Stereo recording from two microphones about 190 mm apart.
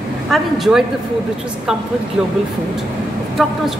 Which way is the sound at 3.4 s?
Centre (ahead or behind).